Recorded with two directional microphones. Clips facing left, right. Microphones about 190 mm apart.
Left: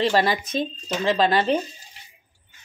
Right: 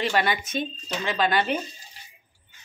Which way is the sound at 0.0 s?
35° left (ahead or behind).